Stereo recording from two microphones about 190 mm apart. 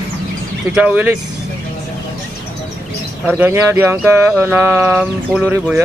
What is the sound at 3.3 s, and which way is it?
Speech, 10° right (ahead or behind).